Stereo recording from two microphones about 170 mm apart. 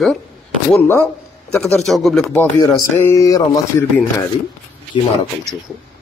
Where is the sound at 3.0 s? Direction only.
15° left (ahead or behind).